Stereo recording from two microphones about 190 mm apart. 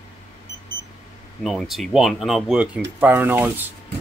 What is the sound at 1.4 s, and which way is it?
Speech, centre (ahead or behind).